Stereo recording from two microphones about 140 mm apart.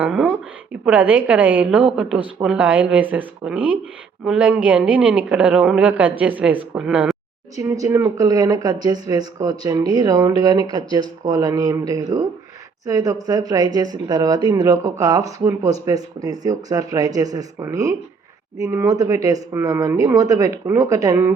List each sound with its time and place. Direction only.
0.0 s a sound: 10° right (ahead or behind)
0.9 s a man's voice: 10° right (ahead or behind)
7.5 s speech: 25° right (ahead or behind)